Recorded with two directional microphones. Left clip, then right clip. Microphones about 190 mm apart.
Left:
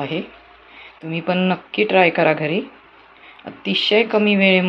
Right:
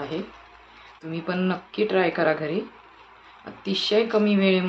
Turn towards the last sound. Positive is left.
turn(degrees=15)  # may be behind; listen again after turning